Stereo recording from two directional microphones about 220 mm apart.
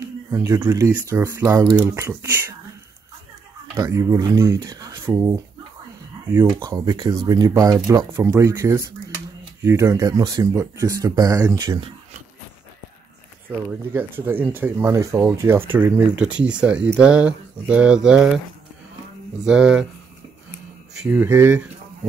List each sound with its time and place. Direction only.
0.0 s speech: 15° right (ahead or behind)
3.7 s speech: 15° right (ahead or behind)
13.5 s speech: 10° right (ahead or behind)
19.4 s speech: 5° right (ahead or behind)
21.0 s speech: 10° right (ahead or behind)